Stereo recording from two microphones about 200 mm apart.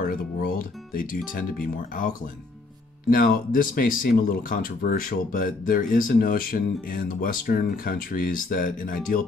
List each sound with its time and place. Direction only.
0.0 s speech: 45° left (ahead or behind)